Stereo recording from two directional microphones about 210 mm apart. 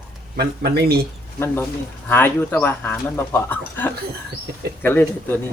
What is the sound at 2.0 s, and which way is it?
Speech, 10° left (ahead or behind).